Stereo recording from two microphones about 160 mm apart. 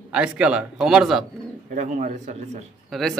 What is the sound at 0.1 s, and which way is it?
Speech, 5° right (ahead or behind).